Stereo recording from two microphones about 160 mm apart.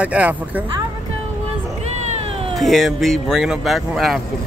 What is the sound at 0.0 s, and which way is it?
Speech, 10° right (ahead or behind).